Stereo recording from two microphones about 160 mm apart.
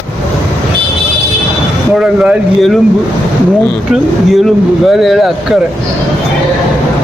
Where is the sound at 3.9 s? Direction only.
Centre (ahead or behind).